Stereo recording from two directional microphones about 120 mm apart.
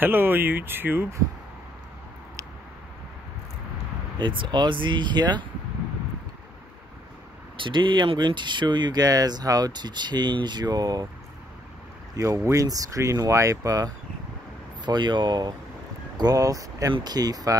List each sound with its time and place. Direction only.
0.0 s speech: 15° right (ahead or behind)
4.2 s speech: 40° right (ahead or behind)
7.5 s speech: 45° right (ahead or behind)
12.2 s speech: 25° right (ahead or behind)